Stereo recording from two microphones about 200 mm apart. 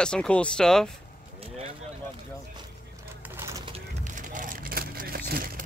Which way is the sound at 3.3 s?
15° right (ahead or behind).